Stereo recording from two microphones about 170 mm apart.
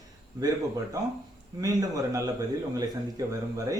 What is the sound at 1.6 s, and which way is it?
Speech, 20° right (ahead or behind).